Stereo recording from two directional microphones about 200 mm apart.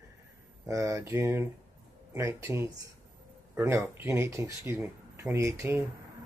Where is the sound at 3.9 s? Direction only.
15° right (ahead or behind).